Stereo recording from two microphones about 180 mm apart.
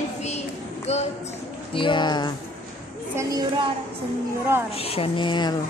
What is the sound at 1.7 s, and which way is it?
Speech, 25° left (ahead or behind).